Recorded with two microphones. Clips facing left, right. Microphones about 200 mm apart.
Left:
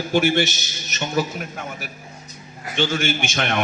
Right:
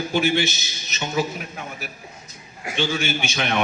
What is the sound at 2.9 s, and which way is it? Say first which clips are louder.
Speech: left 2 dB; 50° left (ahead or behind).